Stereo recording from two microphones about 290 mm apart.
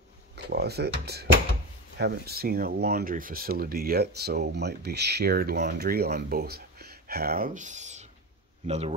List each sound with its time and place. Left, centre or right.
0.4 s speech: right